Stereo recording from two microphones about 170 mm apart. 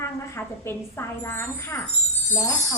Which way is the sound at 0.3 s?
15° left (ahead or behind).